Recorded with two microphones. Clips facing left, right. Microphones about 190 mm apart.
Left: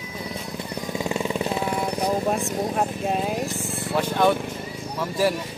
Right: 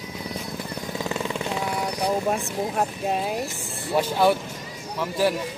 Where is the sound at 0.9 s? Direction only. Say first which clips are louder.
Left 3 dB; 15° left (ahead or behind).